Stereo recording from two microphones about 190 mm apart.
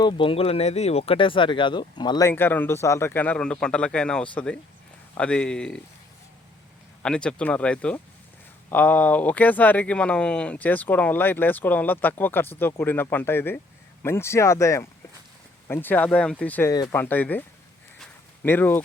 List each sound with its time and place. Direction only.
0.0 s speech: 25° left (ahead or behind); by 5.8 s 5° left (ahead or behind)
7.0 s speech: 5° left (ahead or behind)
16.7 s speech: 20° left (ahead or behind)
17.0 s speech: 10° left (ahead or behind)
18.4 s speech: 10° left (ahead or behind)